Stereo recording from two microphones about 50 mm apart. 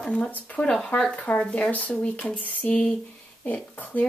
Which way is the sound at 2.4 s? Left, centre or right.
Left.